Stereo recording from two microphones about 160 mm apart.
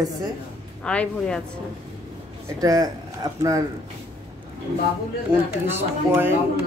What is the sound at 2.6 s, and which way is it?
Speech, 20° right (ahead or behind).